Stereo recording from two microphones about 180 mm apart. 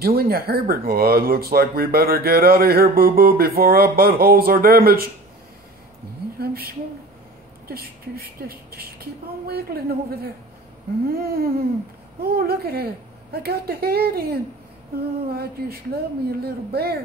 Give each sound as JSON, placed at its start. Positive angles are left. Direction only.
{"t": 0.0, "sound": "speech", "side_deg": -55}
{"t": 6.4, "sound": "a woman's voice", "side_deg": -60}